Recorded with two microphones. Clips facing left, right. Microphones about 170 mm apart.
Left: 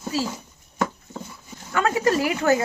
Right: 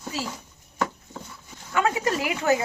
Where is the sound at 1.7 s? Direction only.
15° right (ahead or behind).